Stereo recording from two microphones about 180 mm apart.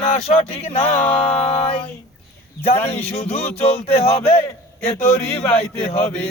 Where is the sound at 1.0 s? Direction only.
5° left (ahead or behind).